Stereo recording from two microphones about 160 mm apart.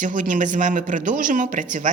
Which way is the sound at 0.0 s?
55° right (ahead or behind).